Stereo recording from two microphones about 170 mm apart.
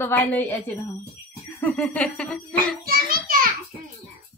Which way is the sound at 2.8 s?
55° right (ahead or behind).